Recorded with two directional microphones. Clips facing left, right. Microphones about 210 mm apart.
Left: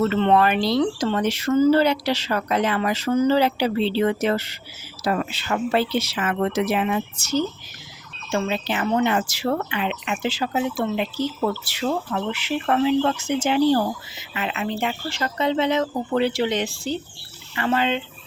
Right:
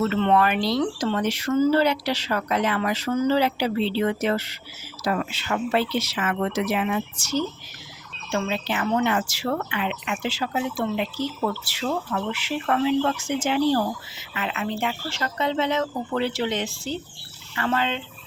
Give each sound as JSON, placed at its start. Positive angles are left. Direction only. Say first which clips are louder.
{"t": 0.1, "sound": "speech", "louder": "left 2 dB", "side_deg": 30}